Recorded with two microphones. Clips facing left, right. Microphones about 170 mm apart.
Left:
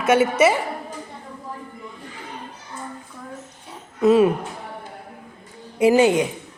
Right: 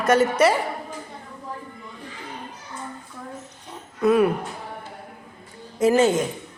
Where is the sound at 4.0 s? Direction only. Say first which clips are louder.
Left 3 dB; 20° left (ahead or behind).